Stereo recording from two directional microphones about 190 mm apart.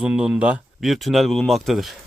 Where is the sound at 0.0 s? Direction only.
5° right (ahead or behind).